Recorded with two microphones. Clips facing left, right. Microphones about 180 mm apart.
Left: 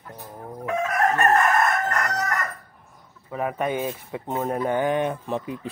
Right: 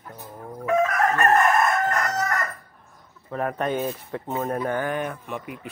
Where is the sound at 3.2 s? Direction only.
10° left (ahead or behind).